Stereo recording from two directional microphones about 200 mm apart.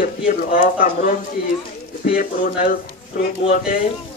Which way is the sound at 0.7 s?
45° left (ahead or behind).